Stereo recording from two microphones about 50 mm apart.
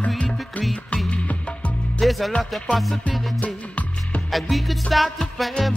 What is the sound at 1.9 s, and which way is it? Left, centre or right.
Music, centre.